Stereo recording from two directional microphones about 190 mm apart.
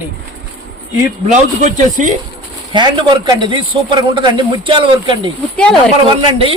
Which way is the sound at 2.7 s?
25° right (ahead or behind).